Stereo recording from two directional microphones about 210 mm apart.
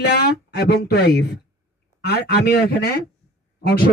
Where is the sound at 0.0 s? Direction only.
50° left (ahead or behind).